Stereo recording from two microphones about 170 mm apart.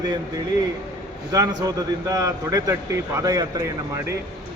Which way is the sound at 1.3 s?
20° right (ahead or behind).